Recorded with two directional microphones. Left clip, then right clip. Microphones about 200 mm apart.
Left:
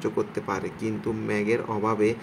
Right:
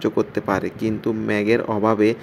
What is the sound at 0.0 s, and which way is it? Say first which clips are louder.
Speech: right 6 dB; 25° right (ahead or behind).